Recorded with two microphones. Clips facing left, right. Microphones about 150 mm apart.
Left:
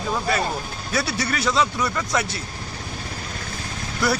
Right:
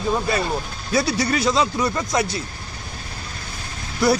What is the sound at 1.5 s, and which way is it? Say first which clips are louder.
Speech: right 2 dB; 30° right (ahead or behind).